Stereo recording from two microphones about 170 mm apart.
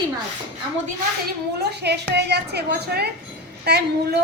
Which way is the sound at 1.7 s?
75° right (ahead or behind).